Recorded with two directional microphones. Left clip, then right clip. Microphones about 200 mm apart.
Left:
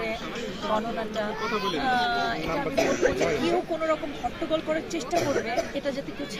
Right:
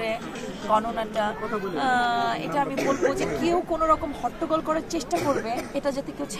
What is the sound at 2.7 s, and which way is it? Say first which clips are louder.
Speech: left 4 dB; 65° right (ahead or behind).